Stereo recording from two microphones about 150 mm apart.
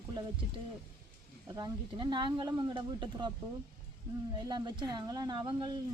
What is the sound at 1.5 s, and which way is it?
Speech, 30° right (ahead or behind).